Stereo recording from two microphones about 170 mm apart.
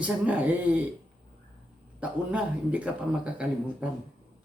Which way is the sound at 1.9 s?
10° right (ahead or behind).